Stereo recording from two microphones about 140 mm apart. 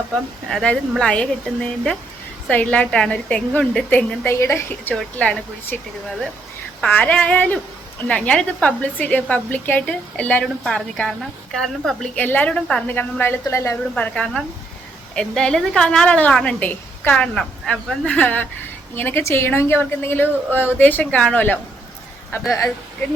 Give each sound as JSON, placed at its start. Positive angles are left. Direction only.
{"t": 0.5, "sound": "a woman's voice", "side_deg": 5}
{"t": 4.9, "sound": "a woman's voice", "side_deg": 10}
{"t": 6.8, "sound": "a woman's voice", "side_deg": 10}
{"t": 13.9, "sound": "a woman's voice", "side_deg": 10}